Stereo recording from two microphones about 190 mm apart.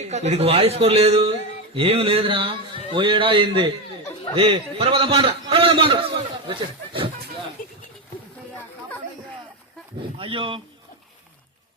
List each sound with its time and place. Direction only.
0.0 s a man's voice: 35° right (ahead or behind)
6.5 s a sound: 25° right (ahead or behind)
10.2 s speech: 25° right (ahead or behind)